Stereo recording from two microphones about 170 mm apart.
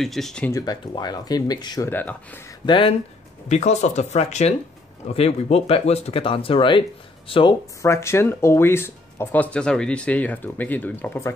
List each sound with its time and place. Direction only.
0.0 s speech: centre (ahead or behind)
0.5 s speech: 20° left (ahead or behind)
1.9 s speech: 10° left (ahead or behind)
2.6 s speech: 30° left (ahead or behind)
3.4 s speech: 40° left (ahead or behind)
7.8 s speech: 15° left (ahead or behind)